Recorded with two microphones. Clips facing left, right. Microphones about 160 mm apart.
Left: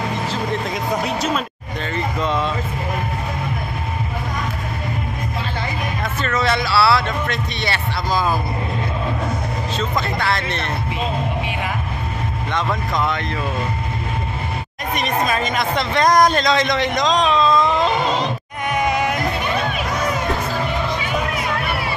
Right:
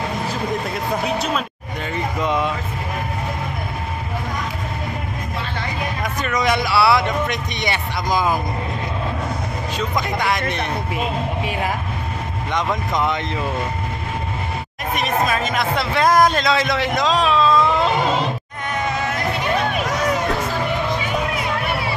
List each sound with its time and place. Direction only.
0.3 s speech: 5° right (ahead or behind)
2.1 s speech: 15° right (ahead or behind)
6.2 s speech: 15° right (ahead or behind)
9.8 s speech: 15° right (ahead or behind)
12.5 s speech: 15° right (ahead or behind)
15.0 s a man's voice: centre (ahead or behind)
18.7 s a sound: 15° left (ahead or behind)